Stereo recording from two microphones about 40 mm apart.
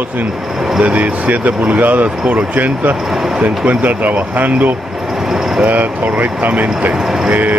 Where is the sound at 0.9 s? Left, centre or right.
Right.